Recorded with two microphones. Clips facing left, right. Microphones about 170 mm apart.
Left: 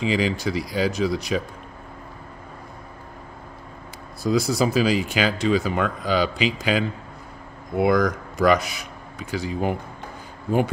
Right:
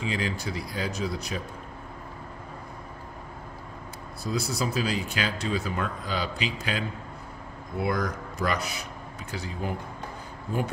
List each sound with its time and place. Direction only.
0.0 s speech: 90° left
4.2 s speech: 90° left